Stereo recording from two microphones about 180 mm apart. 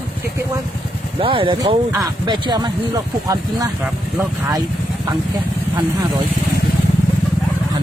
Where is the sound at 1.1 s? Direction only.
30° right (ahead or behind).